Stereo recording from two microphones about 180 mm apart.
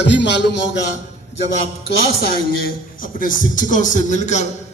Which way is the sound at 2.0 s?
60° left (ahead or behind).